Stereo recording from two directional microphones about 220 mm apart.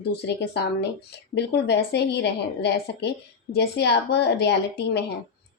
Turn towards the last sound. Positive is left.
turn(degrees=50)  # may be behind; listen again after turning